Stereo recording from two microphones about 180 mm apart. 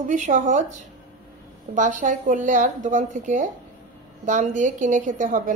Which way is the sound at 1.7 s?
45° right (ahead or behind).